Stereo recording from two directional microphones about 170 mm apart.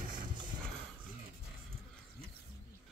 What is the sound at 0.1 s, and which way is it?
Horse, 55° right (ahead or behind).